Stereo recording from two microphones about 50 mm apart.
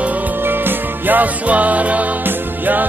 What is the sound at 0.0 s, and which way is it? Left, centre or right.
Music, right.